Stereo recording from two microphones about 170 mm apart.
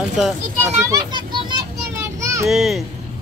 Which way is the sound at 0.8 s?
20° right (ahead or behind).